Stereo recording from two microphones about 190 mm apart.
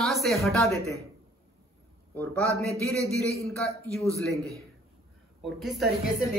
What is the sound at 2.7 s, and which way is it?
Speech, 15° right (ahead or behind).